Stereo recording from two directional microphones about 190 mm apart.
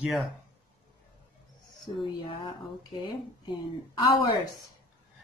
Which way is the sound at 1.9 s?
25° left (ahead or behind).